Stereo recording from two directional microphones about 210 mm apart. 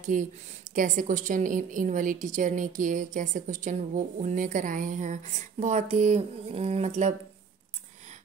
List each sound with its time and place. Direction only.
0.0 s a woman's voice: 35° right (ahead or behind)